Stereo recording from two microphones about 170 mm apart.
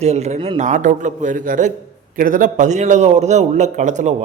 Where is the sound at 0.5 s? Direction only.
45° right (ahead or behind).